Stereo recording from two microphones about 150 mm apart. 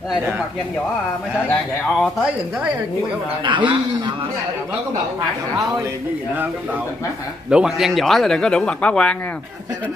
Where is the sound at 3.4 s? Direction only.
30° right (ahead or behind).